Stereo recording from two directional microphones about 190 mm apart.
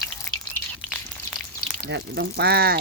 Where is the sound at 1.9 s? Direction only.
60° right (ahead or behind).